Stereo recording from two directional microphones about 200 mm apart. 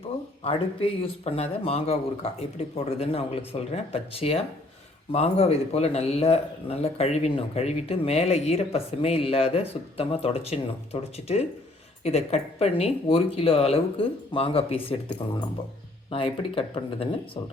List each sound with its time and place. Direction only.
0.4 s a man's voice: 30° left (ahead or behind)